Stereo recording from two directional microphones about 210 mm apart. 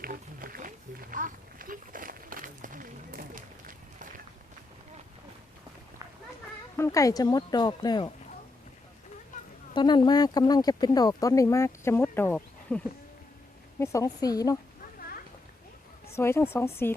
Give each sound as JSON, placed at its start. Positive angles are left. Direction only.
{"t": 0.0, "sound": "speech", "side_deg": -45}
{"t": 6.7, "sound": "speech", "side_deg": 15}
{"t": 9.7, "sound": "speech", "side_deg": 20}
{"t": 16.1, "sound": "speech", "side_deg": 10}